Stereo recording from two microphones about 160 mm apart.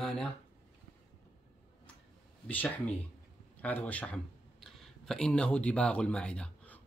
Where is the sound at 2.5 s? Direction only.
10° left (ahead or behind).